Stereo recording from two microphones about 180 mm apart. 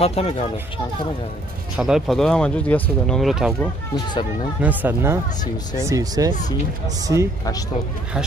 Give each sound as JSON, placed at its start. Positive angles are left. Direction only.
{"t": 0.0, "sound": "speech", "side_deg": 35}
{"t": 1.8, "sound": "speech", "side_deg": 0}
{"t": 3.9, "sound": "speech", "side_deg": 25}
{"t": 4.6, "sound": "speech", "side_deg": -10}